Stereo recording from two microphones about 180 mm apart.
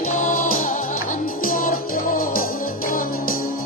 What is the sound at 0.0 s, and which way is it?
Music, 50° left (ahead or behind).